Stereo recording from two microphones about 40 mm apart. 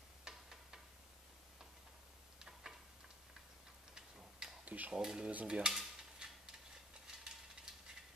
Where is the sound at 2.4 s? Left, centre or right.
Centre.